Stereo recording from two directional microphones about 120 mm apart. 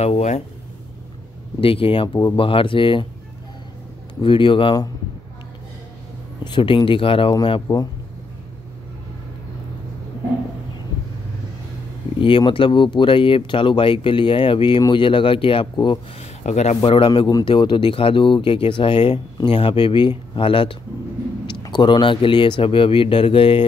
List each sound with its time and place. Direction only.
0.0 s a man's voice: 70° left (ahead or behind)
1.6 s speech: 50° left (ahead or behind)
4.1 s speech: 45° left (ahead or behind)
6.4 s speech: 40° left (ahead or behind)
7.6 s speech: 30° left (ahead or behind)
12.2 s speech: 45° left (ahead or behind)
16.4 s a man's voice: 65° left (ahead or behind)
16.9 s speech: 45° left (ahead or behind)